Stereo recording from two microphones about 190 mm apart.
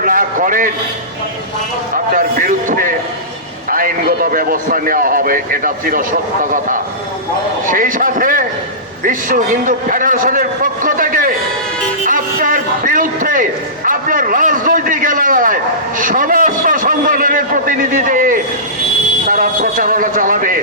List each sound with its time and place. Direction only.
0.0 s a sound: 45° right (ahead or behind)
2.1 s a man's voice: 45° right (ahead or behind)
7.7 s a man's voice: 45° right (ahead or behind)